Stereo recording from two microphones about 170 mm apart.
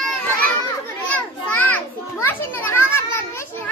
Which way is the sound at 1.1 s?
10° left (ahead or behind).